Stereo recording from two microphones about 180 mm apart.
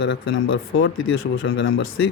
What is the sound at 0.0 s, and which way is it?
Speech, 90° left.